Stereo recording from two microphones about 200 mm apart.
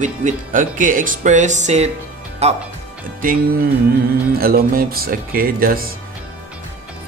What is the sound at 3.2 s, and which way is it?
Speech, 45° right (ahead or behind).